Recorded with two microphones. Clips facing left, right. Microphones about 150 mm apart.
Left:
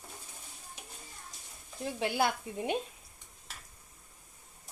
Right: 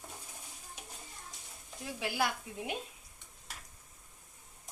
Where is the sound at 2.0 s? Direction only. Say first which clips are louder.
Left 4 dB; 30° left (ahead or behind).